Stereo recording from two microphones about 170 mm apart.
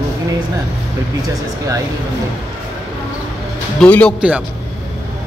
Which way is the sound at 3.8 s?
10° left (ahead or behind).